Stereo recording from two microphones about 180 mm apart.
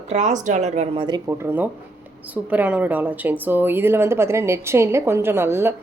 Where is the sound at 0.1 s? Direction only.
40° right (ahead or behind).